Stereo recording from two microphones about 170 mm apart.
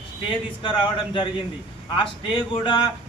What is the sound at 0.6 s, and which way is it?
Speech, 30° left (ahead or behind).